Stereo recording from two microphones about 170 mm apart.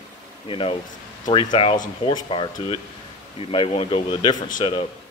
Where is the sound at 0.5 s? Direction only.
30° left (ahead or behind).